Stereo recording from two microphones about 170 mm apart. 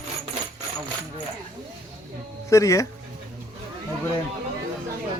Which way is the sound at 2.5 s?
20° left (ahead or behind).